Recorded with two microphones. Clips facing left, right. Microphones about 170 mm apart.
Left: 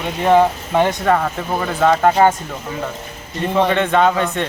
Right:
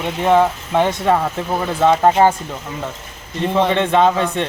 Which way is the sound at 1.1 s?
10° right (ahead or behind).